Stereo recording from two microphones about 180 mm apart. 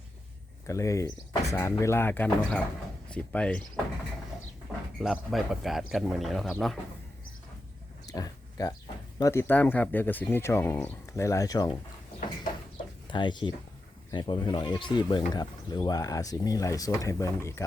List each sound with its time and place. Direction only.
0.7 s speech: 15° left (ahead or behind)
4.9 s speech: centre (ahead or behind)
8.0 s a sound: 20° left (ahead or behind)
9.1 s speech: 15° left (ahead or behind)
13.1 s speech: 25° left (ahead or behind)